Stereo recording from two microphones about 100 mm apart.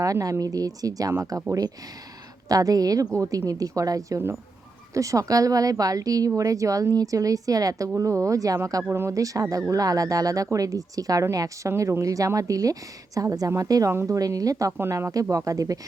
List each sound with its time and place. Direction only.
0.0 s speech: 35° right (ahead or behind)
13.9 s speech: 25° right (ahead or behind)
14.2 s speech: 35° right (ahead or behind)